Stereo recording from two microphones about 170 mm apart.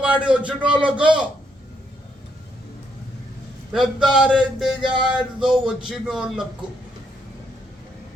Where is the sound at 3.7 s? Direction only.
5° right (ahead or behind).